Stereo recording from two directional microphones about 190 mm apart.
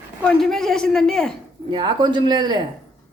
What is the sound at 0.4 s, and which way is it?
Speech, centre (ahead or behind).